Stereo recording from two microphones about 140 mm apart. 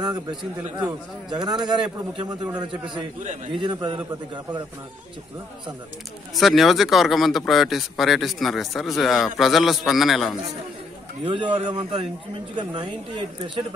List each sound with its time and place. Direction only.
0.0 s a man's voice: 30° right (ahead or behind)
6.3 s a man's voice: centre (ahead or behind)
11.2 s a man's voice: 35° right (ahead or behind)